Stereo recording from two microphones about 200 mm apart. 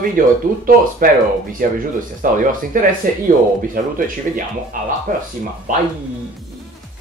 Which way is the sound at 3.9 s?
45° right (ahead or behind).